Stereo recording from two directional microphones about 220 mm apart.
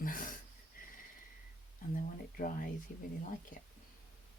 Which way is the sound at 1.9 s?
40° left (ahead or behind).